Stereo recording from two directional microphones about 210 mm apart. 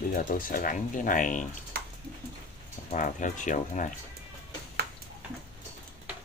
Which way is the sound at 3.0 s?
35° left (ahead or behind).